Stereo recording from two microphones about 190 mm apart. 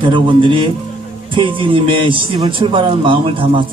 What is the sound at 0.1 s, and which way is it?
Speech, 25° right (ahead or behind).